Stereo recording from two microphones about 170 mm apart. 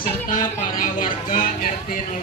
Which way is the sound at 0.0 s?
55° left (ahead or behind).